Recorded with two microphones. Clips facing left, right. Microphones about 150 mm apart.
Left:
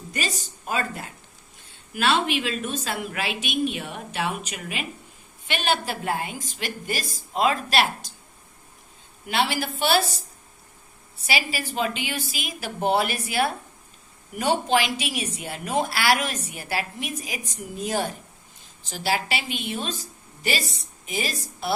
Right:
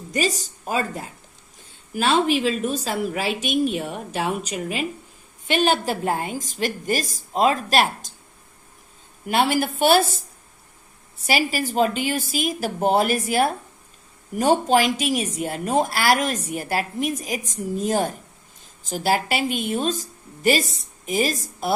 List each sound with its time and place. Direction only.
0.1 s speech: 35° right (ahead or behind)
1.9 s a woman's voice: 40° right (ahead or behind)
9.2 s a woman's voice: 45° right (ahead or behind)
11.3 s a woman's voice: 45° right (ahead or behind)